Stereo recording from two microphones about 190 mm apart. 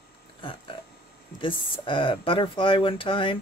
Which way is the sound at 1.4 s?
25° left (ahead or behind).